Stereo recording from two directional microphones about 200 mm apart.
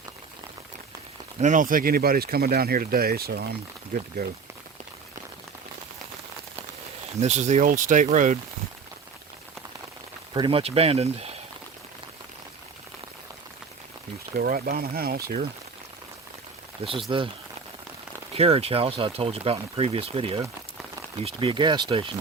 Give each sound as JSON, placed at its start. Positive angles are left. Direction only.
{"t": 1.4, "sound": "speech", "side_deg": -40}
{"t": 7.2, "sound": "speech", "side_deg": -35}
{"t": 10.3, "sound": "speech", "side_deg": -25}
{"t": 14.3, "sound": "speech", "side_deg": -45}
{"t": 16.8, "sound": "speech", "side_deg": -30}
{"t": 18.3, "sound": "speech", "side_deg": -30}